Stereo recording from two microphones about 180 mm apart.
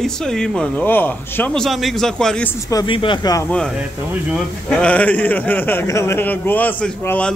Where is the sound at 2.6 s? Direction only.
25° left (ahead or behind).